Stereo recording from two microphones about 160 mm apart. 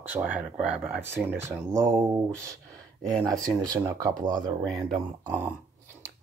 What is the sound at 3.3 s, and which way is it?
Speech, 25° right (ahead or behind).